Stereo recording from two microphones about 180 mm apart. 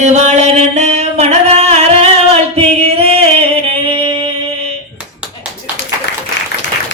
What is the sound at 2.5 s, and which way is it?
Singing, 30° right (ahead or behind).